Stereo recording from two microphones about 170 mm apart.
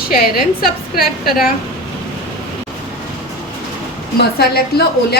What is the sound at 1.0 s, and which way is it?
Speech, centre (ahead or behind).